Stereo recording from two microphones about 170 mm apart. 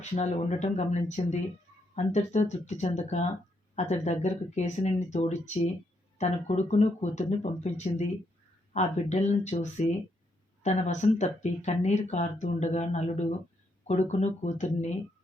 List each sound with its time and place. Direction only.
0.0 s speech: 45° left (ahead or behind)